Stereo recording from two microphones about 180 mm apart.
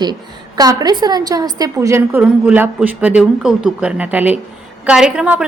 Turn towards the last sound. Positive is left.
turn(degrees=-5)  # may be behind; listen again after turning